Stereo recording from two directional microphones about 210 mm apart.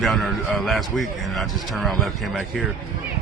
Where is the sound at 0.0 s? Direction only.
Centre (ahead or behind).